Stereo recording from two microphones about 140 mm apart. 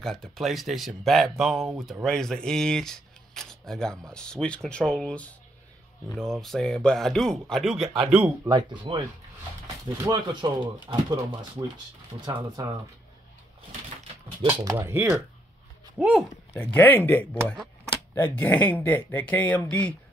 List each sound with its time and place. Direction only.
0.0 s speech: centre (ahead or behind)
8.5 s speech: 30° right (ahead or behind)
10.0 s speech: 30° right (ahead or behind)
14.6 s speech: 20° right (ahead or behind); by 16.3 s 5° right (ahead or behind)
16.6 s speech: 15° left (ahead or behind)